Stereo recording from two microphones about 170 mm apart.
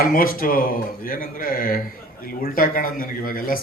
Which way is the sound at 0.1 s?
55° left (ahead or behind).